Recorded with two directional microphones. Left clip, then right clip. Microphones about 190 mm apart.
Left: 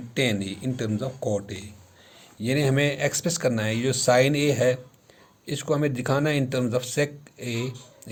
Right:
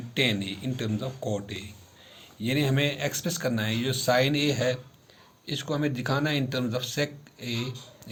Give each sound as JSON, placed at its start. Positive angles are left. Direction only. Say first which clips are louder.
{"t": 0.1, "sound": "speech", "louder": "left 1 dB", "side_deg": 50}